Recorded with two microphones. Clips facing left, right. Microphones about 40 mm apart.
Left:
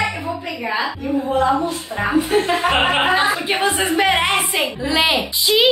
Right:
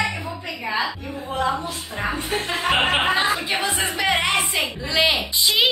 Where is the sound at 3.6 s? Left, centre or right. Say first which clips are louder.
Left 6 dB; left; by 5.7 s centre.